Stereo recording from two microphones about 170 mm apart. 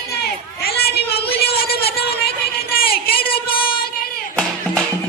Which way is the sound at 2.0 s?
65° left (ahead or behind).